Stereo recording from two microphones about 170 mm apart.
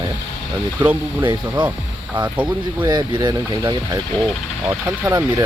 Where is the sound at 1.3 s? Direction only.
25° right (ahead or behind).